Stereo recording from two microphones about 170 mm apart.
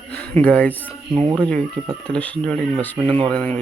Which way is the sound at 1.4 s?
5° left (ahead or behind).